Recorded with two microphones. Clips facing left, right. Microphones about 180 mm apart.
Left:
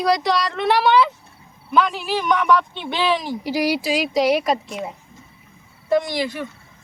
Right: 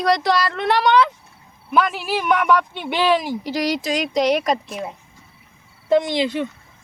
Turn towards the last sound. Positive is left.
turn(degrees=-20)  # may be behind; listen again after turning